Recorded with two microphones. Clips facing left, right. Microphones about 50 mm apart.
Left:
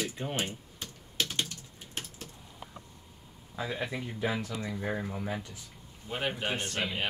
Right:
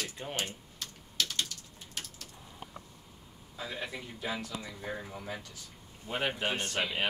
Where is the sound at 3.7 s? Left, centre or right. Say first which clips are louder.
Left 4 dB; centre.